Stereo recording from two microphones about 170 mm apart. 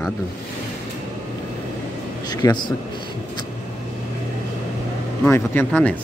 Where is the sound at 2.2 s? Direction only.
25° left (ahead or behind).